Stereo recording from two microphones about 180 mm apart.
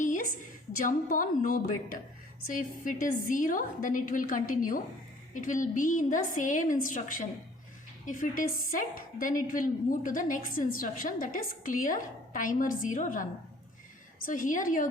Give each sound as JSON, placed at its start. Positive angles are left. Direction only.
{"t": 0.0, "sound": "a sound", "side_deg": 45}
{"t": 0.8, "sound": "a woman's voice", "side_deg": 50}
{"t": 14.3, "sound": "a woman's voice", "side_deg": 50}